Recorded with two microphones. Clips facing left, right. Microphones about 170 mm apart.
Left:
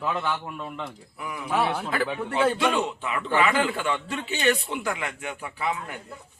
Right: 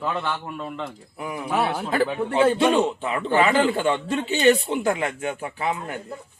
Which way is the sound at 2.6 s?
30° right (ahead or behind).